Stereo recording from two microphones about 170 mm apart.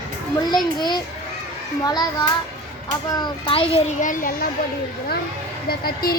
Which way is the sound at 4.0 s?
50° left (ahead or behind).